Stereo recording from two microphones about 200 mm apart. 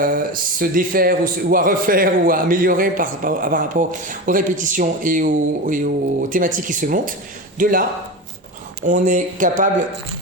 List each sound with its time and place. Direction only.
0.0 s a man's voice: 45° right (ahead or behind)